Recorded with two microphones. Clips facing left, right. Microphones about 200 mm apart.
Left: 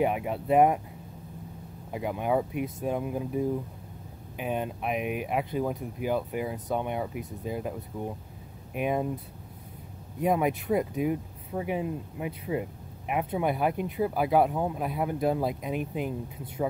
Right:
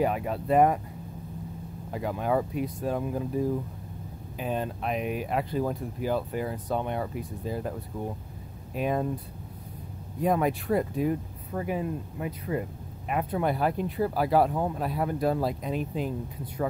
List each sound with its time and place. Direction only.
0.0 s speech: 15° left (ahead or behind)
1.9 s speech: 10° left (ahead or behind)
5.6 s speech: centre (ahead or behind)
10.3 s speech: 5° left (ahead or behind)
15.2 s speech: 15° left (ahead or behind)